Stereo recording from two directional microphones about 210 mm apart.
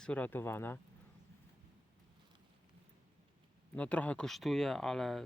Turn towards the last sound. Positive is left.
turn(degrees=0)  # may be behind; listen again after turning